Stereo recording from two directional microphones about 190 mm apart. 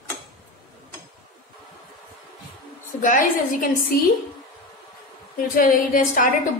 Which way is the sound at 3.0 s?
40° left (ahead or behind).